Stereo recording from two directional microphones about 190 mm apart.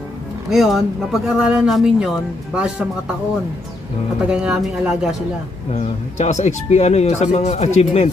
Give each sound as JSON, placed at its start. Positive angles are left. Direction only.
{"t": 0.5, "sound": "speech", "side_deg": 0}
{"t": 4.3, "sound": "speech", "side_deg": -5}
{"t": 5.7, "sound": "speech", "side_deg": 40}